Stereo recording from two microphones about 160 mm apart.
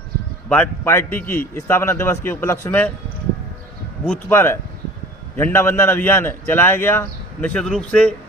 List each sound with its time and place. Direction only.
0.5 s a man's voice: 10° left (ahead or behind)
4.3 s a man's voice: 15° left (ahead or behind)